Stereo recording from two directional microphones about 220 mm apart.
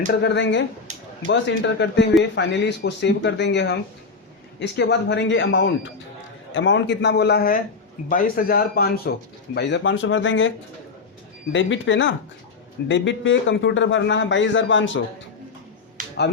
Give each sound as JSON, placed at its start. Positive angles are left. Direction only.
{"t": 0.1, "sound": "a man's voice", "side_deg": 50}
{"t": 11.5, "sound": "a man's voice", "side_deg": 60}
{"t": 16.0, "sound": "a sound", "side_deg": -35}